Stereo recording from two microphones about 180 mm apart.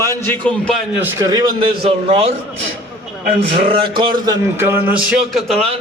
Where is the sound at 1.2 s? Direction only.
20° right (ahead or behind).